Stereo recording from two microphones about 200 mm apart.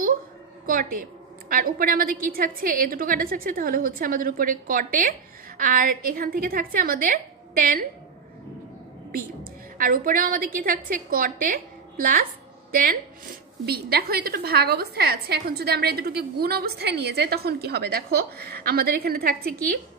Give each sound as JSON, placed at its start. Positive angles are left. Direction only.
{"t": 0.7, "sound": "a woman's voice", "side_deg": -45}
{"t": 9.1, "sound": "a woman's voice", "side_deg": -45}
{"t": 13.7, "sound": "a woman's voice", "side_deg": -50}